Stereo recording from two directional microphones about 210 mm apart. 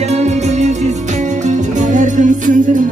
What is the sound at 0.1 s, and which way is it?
Music, 30° right (ahead or behind).